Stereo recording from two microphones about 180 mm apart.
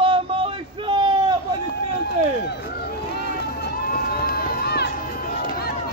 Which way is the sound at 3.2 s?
60° left (ahead or behind).